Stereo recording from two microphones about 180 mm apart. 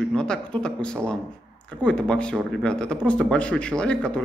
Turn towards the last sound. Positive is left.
turn(degrees=5)  # may be behind; listen again after turning